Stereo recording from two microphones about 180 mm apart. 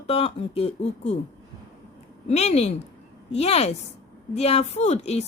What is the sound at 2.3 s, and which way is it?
Speech, 35° left (ahead or behind).